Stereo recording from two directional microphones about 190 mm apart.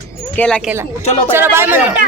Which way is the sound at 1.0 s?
35° left (ahead or behind).